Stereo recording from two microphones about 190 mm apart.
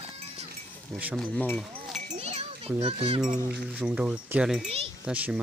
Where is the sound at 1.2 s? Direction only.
5° left (ahead or behind).